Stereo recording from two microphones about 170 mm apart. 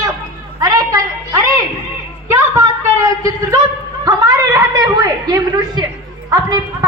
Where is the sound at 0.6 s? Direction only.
20° right (ahead or behind).